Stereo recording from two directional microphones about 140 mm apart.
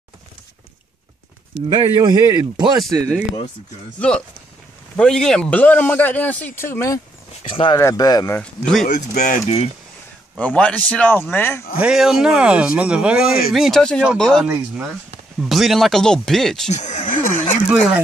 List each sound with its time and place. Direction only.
2.0 s speech: 30° right (ahead or behind)
4.9 s a man's voice: 5° left (ahead or behind)
7.4 s speech: 40° left (ahead or behind)
7.7 s speech: 25° left (ahead or behind)
8.4 s speech: 5° left (ahead or behind)
8.8 s speech: 60° left (ahead or behind)
10.4 s a man's voice: 10° left (ahead or behind)
11.8 s speech: 5° right (ahead or behind)
14.4 s speech: 15° right (ahead or behind)
15.4 s speech: centre (ahead or behind)
16.6 s speech: 55° left (ahead or behind)
17.6 s speech: 5° right (ahead or behind)